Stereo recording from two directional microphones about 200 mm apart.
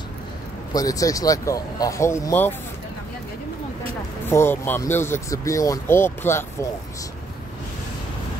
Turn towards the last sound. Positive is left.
turn(degrees=10)  # may be behind; listen again after turning